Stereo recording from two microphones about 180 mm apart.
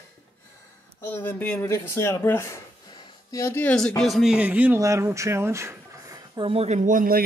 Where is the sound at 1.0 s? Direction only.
10° left (ahead or behind).